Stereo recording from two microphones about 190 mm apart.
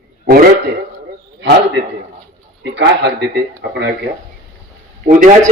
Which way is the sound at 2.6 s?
65° right (ahead or behind).